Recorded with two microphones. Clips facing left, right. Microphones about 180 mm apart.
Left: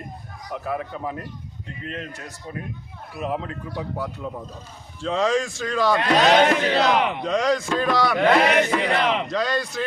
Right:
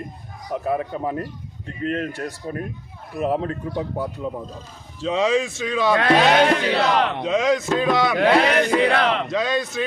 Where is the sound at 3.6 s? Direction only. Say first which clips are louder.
Right 4 dB; 25° right (ahead or behind).